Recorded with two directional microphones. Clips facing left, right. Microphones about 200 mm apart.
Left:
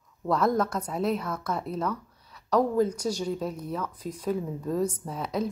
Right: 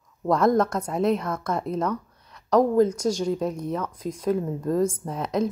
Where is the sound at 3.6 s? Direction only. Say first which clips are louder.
Right 4 dB; 5° left (ahead or behind).